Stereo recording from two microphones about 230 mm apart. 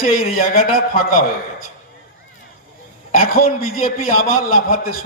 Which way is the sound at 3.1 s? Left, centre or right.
Left.